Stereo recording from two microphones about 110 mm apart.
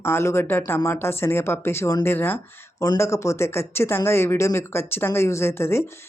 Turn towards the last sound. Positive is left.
turn(degrees=20)  # may be behind; listen again after turning